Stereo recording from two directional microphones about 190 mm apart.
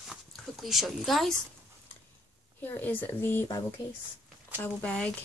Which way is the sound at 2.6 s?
10° left (ahead or behind).